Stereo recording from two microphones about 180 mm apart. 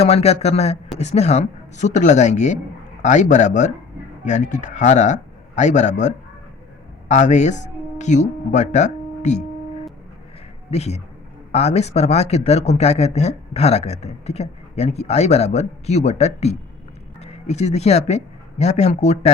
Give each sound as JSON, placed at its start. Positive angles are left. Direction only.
{"t": 0.0, "sound": "a man's voice", "side_deg": 35}
{"t": 10.7, "sound": "speech", "side_deg": 35}